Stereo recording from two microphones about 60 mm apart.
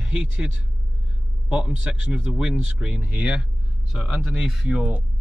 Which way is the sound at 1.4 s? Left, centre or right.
Centre.